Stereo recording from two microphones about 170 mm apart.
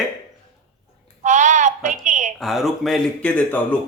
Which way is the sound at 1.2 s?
45° right (ahead or behind).